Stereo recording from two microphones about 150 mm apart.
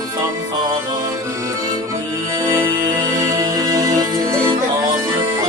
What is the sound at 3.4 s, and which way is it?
Music, 25° right (ahead or behind).